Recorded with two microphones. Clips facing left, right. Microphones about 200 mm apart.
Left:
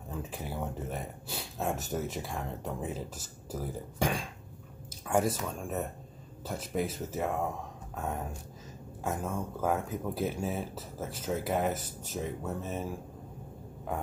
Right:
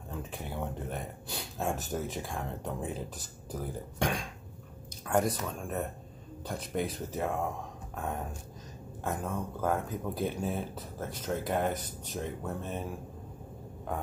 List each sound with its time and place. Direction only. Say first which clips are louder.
0.3 s speech: right 1 dB; 5° left (ahead or behind)